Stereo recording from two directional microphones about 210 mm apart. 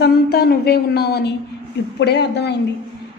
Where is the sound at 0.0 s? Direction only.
50° left (ahead or behind).